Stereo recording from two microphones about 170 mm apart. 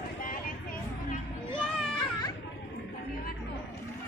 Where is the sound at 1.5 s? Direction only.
25° left (ahead or behind).